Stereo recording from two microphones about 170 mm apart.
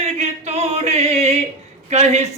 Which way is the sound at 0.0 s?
40° right (ahead or behind).